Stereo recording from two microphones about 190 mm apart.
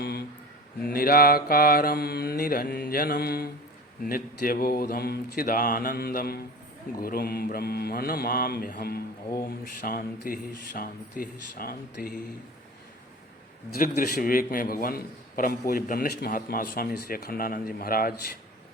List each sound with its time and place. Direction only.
0.0 s a sound: 55° left (ahead or behind)
0.9 s a man's voice: 50° left (ahead or behind)
13.7 s a man's voice: 50° left (ahead or behind)